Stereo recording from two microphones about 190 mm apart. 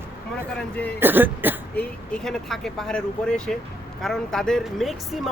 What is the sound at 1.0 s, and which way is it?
Speech, 10° right (ahead or behind).